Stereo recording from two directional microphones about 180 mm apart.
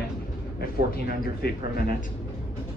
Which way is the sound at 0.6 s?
55° left (ahead or behind).